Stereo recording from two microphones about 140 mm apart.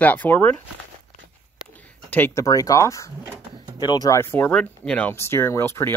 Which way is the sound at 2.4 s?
25° left (ahead or behind).